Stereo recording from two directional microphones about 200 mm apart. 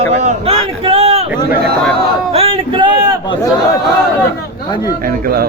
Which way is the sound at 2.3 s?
25° right (ahead or behind).